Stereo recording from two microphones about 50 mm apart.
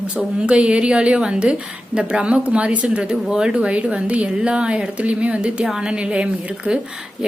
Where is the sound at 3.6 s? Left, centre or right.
Right.